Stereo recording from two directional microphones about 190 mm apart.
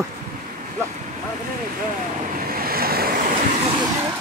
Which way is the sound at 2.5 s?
50° right (ahead or behind).